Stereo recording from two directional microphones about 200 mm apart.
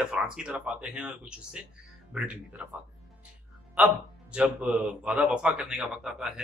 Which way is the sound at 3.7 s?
5° right (ahead or behind).